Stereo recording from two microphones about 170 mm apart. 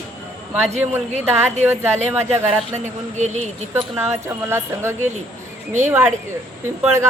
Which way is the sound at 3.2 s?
45° right (ahead or behind).